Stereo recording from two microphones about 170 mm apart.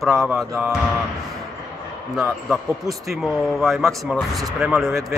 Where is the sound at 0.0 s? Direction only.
Centre (ahead or behind).